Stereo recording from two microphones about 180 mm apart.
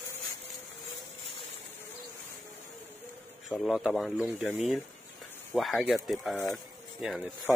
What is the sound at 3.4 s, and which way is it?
Speech, centre (ahead or behind).